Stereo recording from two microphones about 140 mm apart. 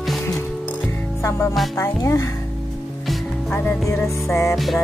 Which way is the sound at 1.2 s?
20° left (ahead or behind).